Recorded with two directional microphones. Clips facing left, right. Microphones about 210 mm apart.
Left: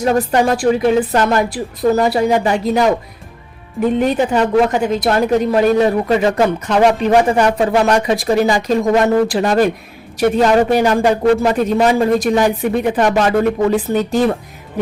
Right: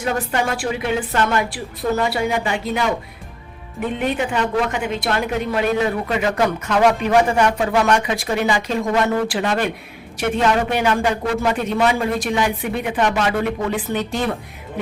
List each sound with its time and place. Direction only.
0.0 s a woman's voice: 40° left (ahead or behind)
3.9 s a woman's voice: 40° left (ahead or behind)